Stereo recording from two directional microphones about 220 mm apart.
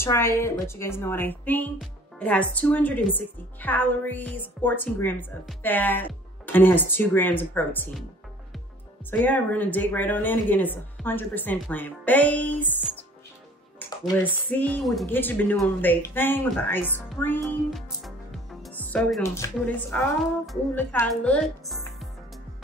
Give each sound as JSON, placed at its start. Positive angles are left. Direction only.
{"t": 0.0, "sound": "a woman's voice", "side_deg": 10}
{"t": 9.1, "sound": "a woman's voice", "side_deg": 5}
{"t": 17.6, "sound": "music", "side_deg": 0}
{"t": 19.2, "sound": "a woman's voice", "side_deg": 10}